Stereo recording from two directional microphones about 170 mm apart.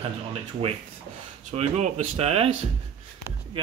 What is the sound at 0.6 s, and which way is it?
Speech, 35° right (ahead or behind).